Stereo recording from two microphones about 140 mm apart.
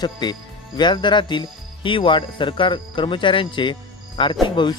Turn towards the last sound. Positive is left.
turn(degrees=35)  # may be behind; listen again after turning